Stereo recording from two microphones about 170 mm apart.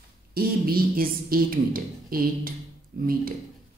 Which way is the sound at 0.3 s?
60° right (ahead or behind).